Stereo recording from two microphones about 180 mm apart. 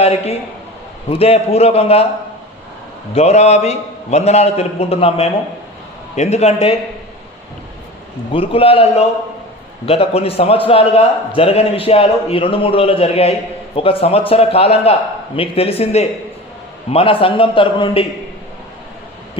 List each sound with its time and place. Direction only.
0.0 s a man's voice: 35° left (ahead or behind)
3.2 s a man's voice: 35° left (ahead or behind)
8.3 s a man's voice: 30° left (ahead or behind)